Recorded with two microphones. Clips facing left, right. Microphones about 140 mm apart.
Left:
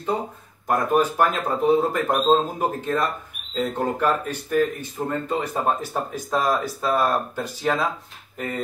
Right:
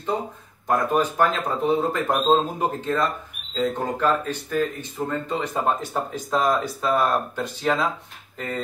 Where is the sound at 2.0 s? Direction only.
Centre (ahead or behind).